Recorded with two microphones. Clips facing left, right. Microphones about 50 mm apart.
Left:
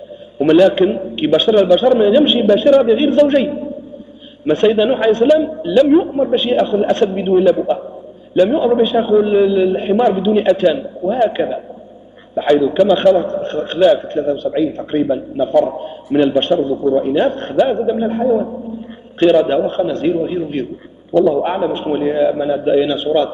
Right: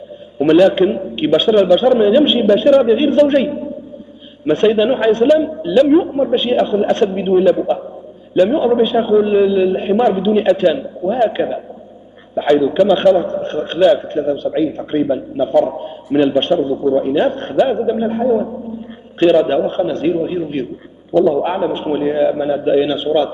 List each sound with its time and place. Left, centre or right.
0.4 s a man's voice: centre